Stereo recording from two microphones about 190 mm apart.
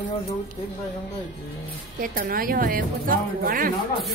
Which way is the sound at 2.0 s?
50° right (ahead or behind).